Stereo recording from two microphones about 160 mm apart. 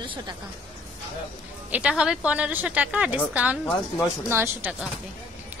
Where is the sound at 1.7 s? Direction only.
5° right (ahead or behind).